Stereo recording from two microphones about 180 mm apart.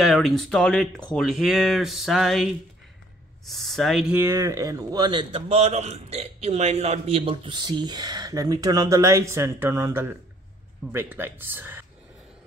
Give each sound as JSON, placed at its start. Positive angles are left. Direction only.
{"t": 0.0, "sound": "speech", "side_deg": 0}